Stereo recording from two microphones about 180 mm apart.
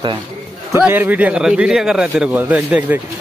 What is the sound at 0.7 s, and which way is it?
A man's voice, 10° right (ahead or behind).